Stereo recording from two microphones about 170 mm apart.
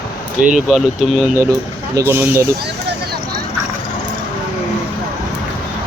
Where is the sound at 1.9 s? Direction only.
15° right (ahead or behind).